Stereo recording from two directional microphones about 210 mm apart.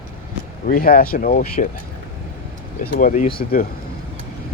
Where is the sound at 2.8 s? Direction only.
40° left (ahead or behind).